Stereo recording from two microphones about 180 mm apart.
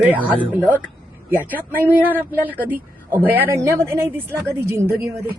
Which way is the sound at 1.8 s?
10° right (ahead or behind).